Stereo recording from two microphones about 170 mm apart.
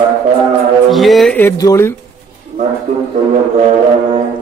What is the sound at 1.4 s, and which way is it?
Speech, 15° left (ahead or behind).